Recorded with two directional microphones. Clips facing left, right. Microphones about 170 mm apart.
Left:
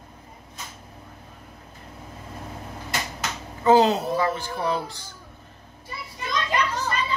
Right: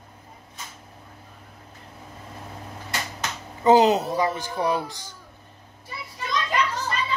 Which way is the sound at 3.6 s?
15° right (ahead or behind).